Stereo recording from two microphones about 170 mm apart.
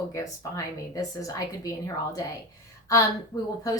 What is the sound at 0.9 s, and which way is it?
A woman's voice, 20° left (ahead or behind).